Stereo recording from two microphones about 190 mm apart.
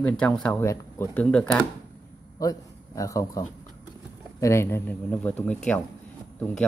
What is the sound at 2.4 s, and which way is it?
A man's voice, 20° left (ahead or behind).